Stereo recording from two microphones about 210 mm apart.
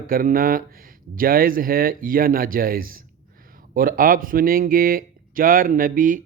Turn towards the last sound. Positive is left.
turn(degrees=-40)  # may be behind; listen again after turning